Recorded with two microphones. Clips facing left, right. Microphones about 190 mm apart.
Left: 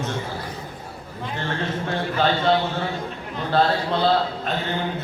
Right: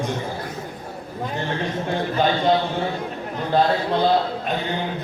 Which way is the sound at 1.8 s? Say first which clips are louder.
Right 1 dB; 15° right (ahead or behind).